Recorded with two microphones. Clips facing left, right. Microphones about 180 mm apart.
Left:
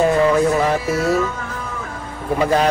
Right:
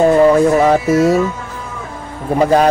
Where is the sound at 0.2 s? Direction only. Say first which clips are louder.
Right 6 dB; 45° right (ahead or behind).